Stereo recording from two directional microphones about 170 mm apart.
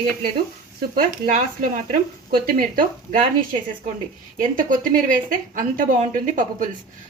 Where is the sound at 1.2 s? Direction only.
50° right (ahead or behind).